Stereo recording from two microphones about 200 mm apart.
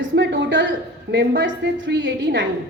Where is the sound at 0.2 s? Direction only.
60° right (ahead or behind).